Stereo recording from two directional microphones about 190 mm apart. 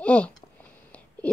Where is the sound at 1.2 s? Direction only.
5° left (ahead or behind).